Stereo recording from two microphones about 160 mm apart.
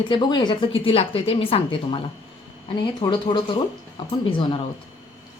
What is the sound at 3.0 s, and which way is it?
A woman's voice, 30° left (ahead or behind).